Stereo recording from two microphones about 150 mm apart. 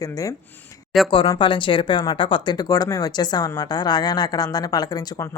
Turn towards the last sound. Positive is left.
turn(degrees=20)  # may be behind; listen again after turning